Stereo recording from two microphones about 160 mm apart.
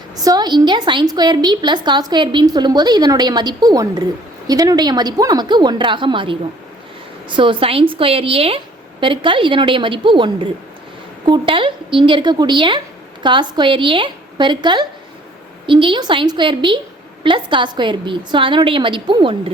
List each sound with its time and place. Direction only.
0.3 s a woman's voice: 25° right (ahead or behind)